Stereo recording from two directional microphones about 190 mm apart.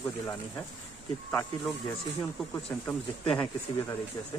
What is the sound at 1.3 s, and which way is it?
Speech, 10° left (ahead or behind).